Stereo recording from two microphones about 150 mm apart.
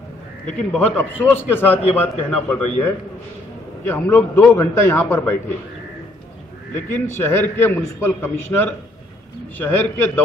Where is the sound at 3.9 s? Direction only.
15° left (ahead or behind).